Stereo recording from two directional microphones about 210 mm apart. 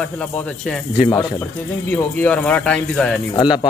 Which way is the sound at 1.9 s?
5° left (ahead or behind).